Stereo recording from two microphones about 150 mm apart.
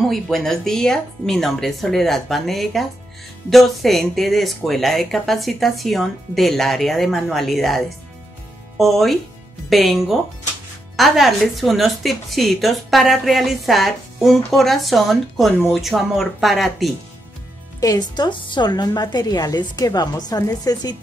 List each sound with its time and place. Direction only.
0.0 s a woman's voice: centre (ahead or behind)
17.7 s a woman's voice: 25° left (ahead or behind)